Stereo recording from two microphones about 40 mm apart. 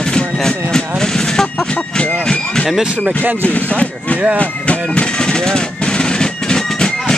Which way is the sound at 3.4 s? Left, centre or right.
Left.